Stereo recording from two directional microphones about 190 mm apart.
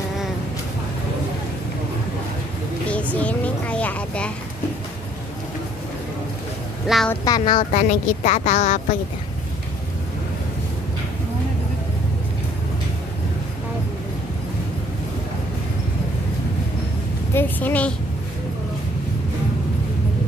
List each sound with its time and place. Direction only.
2.9 s vehicle: 5° left (ahead or behind)
6.9 s speech: centre (ahead or behind)
7.2 s speech: 20° left (ahead or behind)
7.7 s a woman's voice: 40° left (ahead or behind)
17.3 s a woman's voice: 10° left (ahead or behind)